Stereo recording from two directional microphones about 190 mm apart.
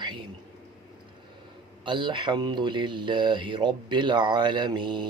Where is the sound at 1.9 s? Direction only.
25° right (ahead or behind).